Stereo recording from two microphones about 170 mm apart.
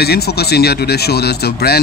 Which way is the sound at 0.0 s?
70° left (ahead or behind).